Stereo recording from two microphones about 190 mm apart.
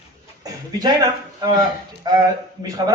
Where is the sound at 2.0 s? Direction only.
20° right (ahead or behind).